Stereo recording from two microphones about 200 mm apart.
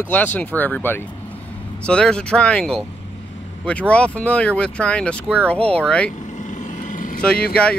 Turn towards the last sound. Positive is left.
turn(degrees=5)  # may be behind; listen again after turning